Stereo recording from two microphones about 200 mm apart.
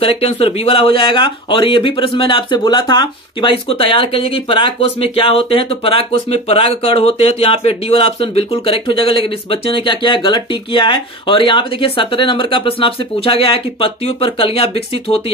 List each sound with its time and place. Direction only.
0.0 s speech: 30° left (ahead or behind)